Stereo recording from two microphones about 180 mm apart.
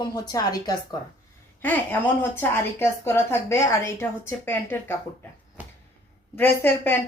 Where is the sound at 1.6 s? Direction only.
10° left (ahead or behind).